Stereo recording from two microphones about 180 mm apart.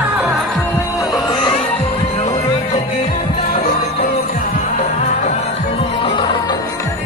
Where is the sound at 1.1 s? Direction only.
25° left (ahead or behind).